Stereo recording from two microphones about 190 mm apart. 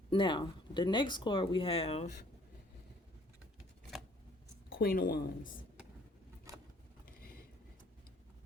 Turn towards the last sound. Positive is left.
turn(degrees=50)  # may be behind; listen again after turning